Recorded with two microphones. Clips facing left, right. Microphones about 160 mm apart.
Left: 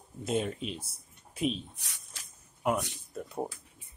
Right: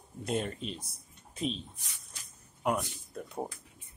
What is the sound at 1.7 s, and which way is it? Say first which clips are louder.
Speech: left 1 dB; 75° left (ahead or behind).